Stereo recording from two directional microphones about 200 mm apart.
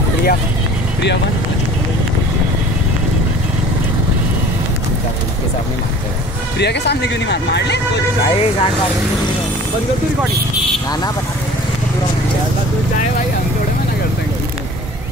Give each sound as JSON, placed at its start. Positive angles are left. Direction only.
{"t": 6.6, "sound": "speech", "side_deg": 55}